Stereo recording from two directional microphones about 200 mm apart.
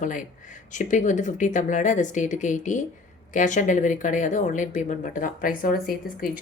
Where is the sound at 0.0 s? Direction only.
40° left (ahead or behind).